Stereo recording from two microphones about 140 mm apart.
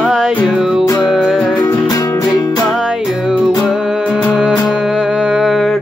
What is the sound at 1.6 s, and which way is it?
Music, 25° left (ahead or behind).